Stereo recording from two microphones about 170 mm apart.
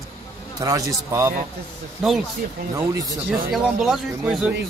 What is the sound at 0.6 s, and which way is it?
Speech, 20° right (ahead or behind).